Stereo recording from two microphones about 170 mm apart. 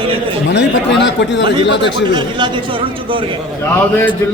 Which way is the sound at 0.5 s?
90° left.